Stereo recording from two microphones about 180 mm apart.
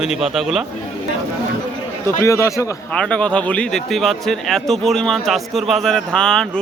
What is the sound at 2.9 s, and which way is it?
A man's voice, 5° left (ahead or behind).